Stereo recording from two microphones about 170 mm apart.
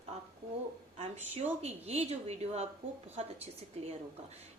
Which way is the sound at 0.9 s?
40° right (ahead or behind).